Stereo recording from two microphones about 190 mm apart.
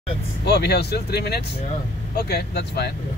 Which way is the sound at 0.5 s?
60° left (ahead or behind).